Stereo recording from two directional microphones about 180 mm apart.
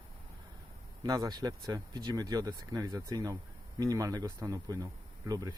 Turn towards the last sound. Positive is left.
turn(degrees=-20)  # may be behind; listen again after turning